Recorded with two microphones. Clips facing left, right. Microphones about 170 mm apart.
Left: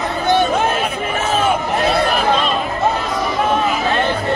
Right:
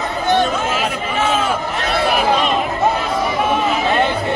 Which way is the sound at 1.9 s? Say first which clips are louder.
Right 1 dB; 5° right (ahead or behind).